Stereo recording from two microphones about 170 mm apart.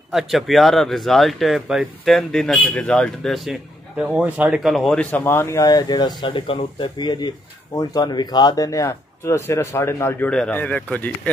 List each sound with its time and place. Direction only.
0.1 s speech: centre (ahead or behind)